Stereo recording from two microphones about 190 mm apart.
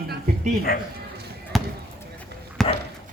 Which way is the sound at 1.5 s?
Centre (ahead or behind).